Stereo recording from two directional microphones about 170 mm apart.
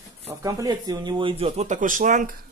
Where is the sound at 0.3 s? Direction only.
20° right (ahead or behind).